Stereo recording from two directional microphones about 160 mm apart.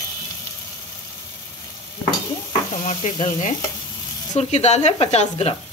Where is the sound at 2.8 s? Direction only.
50° left (ahead or behind).